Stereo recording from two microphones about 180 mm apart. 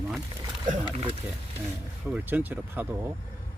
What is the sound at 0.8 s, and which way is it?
Speech, 30° right (ahead or behind).